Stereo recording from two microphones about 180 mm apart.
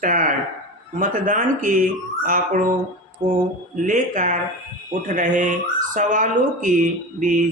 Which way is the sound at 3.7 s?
45° right (ahead or behind).